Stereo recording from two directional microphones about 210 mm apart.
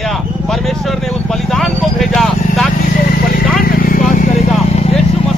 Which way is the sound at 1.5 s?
Centre (ahead or behind).